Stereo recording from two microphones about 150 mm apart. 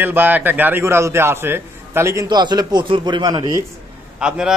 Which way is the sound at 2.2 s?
30° right (ahead or behind).